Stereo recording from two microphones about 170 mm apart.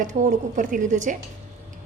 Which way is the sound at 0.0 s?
50° right (ahead or behind).